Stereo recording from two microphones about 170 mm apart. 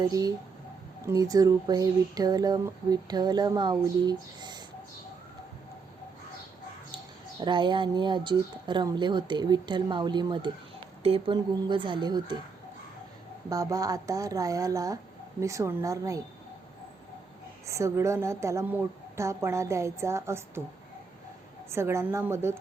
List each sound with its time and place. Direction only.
0.0 s speech: 20° right (ahead or behind)
6.9 s speech: 25° right (ahead or behind)
13.5 s speech: 20° right (ahead or behind)
17.7 s a woman's voice: 15° right (ahead or behind)
21.7 s a woman's voice: 15° right (ahead or behind)